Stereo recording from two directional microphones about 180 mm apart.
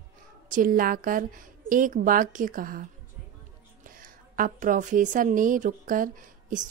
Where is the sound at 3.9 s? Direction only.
50° right (ahead or behind).